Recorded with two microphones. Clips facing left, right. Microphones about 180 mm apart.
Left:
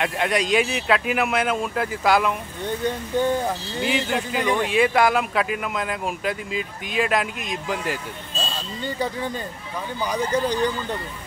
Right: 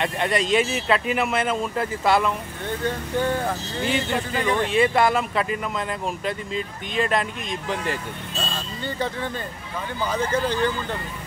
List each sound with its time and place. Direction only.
0.0 s speech: centre (ahead or behind)
2.6 s speech: 15° left (ahead or behind)
3.8 s speech: 5° left (ahead or behind)